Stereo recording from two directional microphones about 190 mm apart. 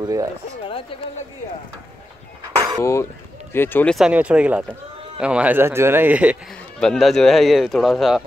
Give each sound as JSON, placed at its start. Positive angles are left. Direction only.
{"t": 0.0, "sound": "speech", "side_deg": -15}
{"t": 2.8, "sound": "speech", "side_deg": 15}
{"t": 6.8, "sound": "speech", "side_deg": 0}